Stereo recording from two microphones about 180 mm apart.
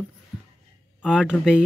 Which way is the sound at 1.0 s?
5° right (ahead or behind).